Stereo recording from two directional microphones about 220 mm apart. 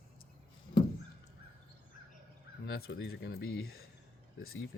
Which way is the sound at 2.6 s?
50° left (ahead or behind).